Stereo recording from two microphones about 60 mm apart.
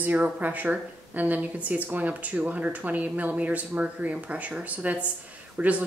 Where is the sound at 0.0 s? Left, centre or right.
Right.